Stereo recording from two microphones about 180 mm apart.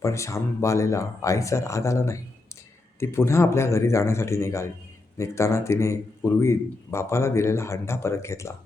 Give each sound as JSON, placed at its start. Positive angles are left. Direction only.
{"t": 0.0, "sound": "speech", "side_deg": 15}